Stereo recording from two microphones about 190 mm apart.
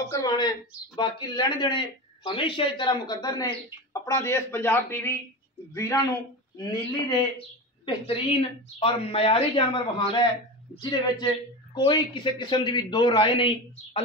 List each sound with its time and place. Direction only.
0.1 s a man's voice: 20° left (ahead or behind)